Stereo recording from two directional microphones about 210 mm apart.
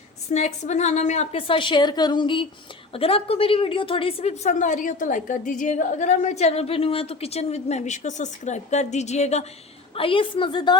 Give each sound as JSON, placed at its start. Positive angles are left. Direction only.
{"t": 0.3, "sound": "a woman's voice", "side_deg": 30}